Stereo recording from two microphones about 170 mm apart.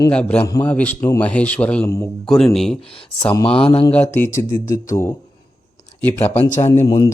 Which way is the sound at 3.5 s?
35° left (ahead or behind).